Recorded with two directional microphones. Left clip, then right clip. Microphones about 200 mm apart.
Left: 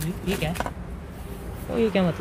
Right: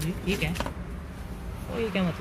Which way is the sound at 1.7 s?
25° left (ahead or behind).